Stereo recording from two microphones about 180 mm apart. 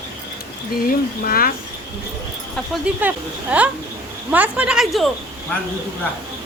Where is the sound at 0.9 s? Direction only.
55° left (ahead or behind).